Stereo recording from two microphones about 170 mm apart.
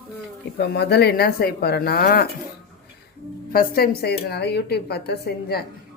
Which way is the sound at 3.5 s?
60° left (ahead or behind).